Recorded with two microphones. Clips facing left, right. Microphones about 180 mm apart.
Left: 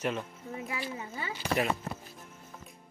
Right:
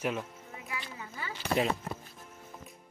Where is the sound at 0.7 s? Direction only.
25° left (ahead or behind).